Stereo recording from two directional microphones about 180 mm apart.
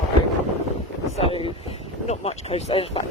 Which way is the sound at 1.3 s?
30° left (ahead or behind).